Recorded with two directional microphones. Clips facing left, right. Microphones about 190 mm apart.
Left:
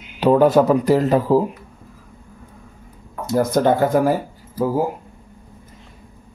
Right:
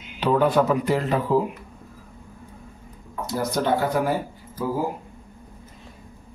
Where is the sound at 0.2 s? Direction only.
40° left (ahead or behind).